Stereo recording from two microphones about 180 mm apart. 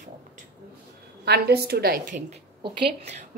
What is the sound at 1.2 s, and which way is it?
A woman's voice, 65° right (ahead or behind).